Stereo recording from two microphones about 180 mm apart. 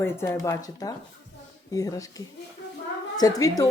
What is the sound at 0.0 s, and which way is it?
A woman's voice, 15° left (ahead or behind).